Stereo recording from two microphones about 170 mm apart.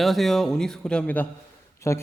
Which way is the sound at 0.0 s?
Centre (ahead or behind).